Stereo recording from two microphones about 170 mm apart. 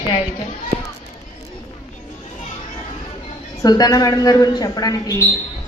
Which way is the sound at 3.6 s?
20° left (ahead or behind).